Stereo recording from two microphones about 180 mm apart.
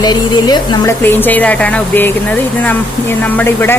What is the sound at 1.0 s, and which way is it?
Speech, 10° left (ahead or behind).